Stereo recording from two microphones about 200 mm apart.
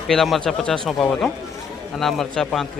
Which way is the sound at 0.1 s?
Centre (ahead or behind).